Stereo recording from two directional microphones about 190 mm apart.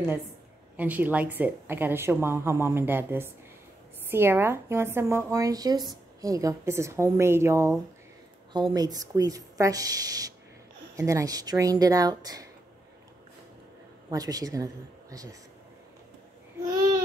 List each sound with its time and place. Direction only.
0.7 s speech: 10° right (ahead or behind)
8.7 s speech: 20° right (ahead or behind)
14.1 s speech: 20° right (ahead or behind)